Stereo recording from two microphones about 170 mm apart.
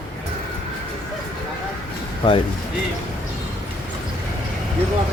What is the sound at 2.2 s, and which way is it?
Speech, 25° left (ahead or behind).